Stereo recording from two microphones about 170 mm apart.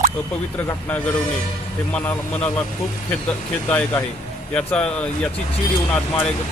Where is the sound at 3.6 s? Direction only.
10° left (ahead or behind).